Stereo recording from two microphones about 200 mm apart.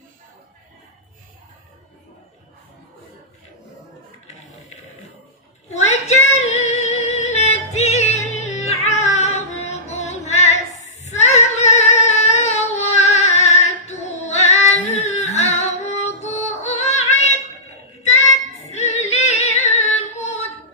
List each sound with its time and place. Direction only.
5.7 s a sound: 35° left (ahead or behind)
6.3 s music: 35° left (ahead or behind)
11.0 s female singing: 35° left (ahead or behind)
18.7 s female singing: 35° left (ahead or behind)